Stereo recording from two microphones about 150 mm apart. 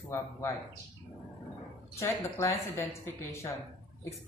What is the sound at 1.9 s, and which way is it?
A woman's voice, 20° left (ahead or behind).